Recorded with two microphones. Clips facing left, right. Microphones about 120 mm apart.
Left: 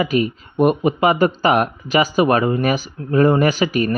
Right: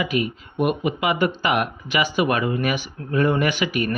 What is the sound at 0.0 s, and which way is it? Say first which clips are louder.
Speech: left 5 dB; 40° left (ahead or behind).